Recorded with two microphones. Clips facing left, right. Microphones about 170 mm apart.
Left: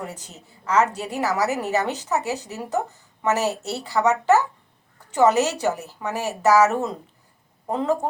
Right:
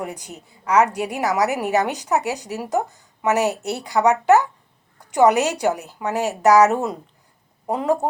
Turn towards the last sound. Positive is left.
turn(degrees=-15)  # may be behind; listen again after turning